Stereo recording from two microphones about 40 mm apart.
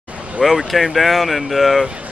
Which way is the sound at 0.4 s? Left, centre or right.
Centre.